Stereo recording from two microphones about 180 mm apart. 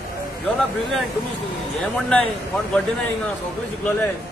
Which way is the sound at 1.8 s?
10° left (ahead or behind).